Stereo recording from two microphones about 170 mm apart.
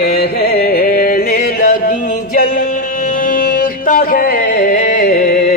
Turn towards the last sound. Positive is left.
turn(degrees=60)  # may be behind; listen again after turning